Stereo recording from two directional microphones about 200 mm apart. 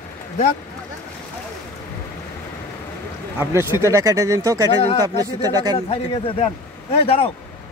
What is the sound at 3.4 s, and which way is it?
Speech, 15° right (ahead or behind).